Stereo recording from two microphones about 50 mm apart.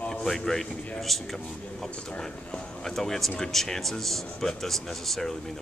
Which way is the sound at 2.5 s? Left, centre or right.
Centre.